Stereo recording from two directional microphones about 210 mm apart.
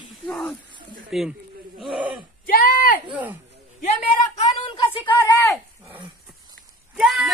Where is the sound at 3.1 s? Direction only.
10° right (ahead or behind).